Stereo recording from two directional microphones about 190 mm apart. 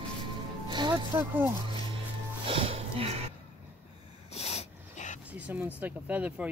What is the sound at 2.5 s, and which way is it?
Speech, 30° right (ahead or behind).